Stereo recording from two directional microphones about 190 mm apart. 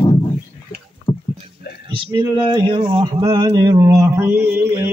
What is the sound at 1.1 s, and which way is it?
Rowboat, 25° left (ahead or behind).